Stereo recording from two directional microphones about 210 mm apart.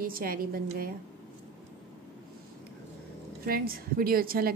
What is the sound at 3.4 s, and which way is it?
A woman's voice, 45° right (ahead or behind).